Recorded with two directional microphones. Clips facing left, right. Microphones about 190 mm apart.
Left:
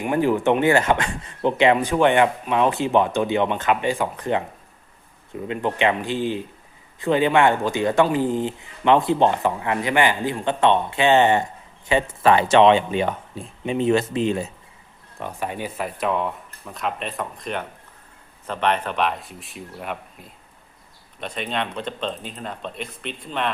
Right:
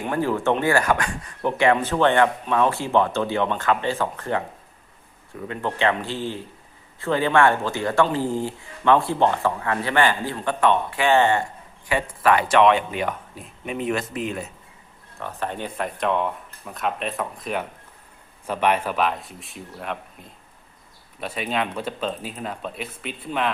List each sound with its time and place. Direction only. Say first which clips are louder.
0.0 s speech: left 3 dB; 15° left (ahead or behind)
5.5 s speech: left 2 dB; 15° left (ahead or behind)
15.2 s speech: left 1 dB; 10° left (ahead or behind)
21.2 s speech: right 1 dB; 5° right (ahead or behind)